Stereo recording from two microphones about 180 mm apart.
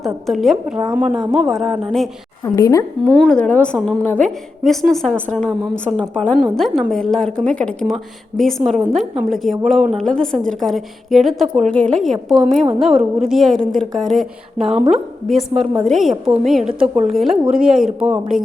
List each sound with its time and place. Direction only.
0.0 s a woman's voice: centre (ahead or behind)
2.4 s a woman's voice: 20° left (ahead or behind)
3.2 s a woman's voice: 5° left (ahead or behind)